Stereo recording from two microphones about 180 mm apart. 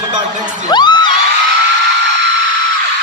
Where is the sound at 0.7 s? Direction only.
25° left (ahead or behind).